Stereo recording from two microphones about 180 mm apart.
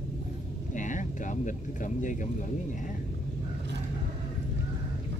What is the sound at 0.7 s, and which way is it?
Speech, 45° left (ahead or behind).